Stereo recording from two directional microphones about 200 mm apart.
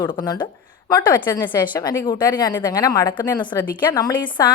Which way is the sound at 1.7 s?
20° left (ahead or behind).